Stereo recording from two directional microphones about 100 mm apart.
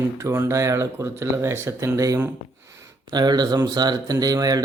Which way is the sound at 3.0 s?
45° right (ahead or behind).